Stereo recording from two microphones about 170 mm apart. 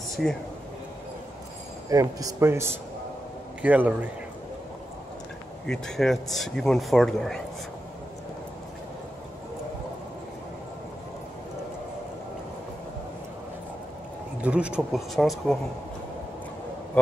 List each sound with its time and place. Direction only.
1.9 s speech: 20° right (ahead or behind)
3.6 s speech: 10° right (ahead or behind)
5.7 s speech: 5° left (ahead or behind)
14.4 s speech: 5° right (ahead or behind)